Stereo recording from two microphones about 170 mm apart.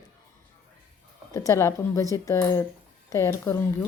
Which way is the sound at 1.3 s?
15° left (ahead or behind).